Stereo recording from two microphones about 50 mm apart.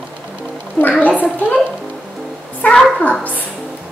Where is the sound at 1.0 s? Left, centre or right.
Left.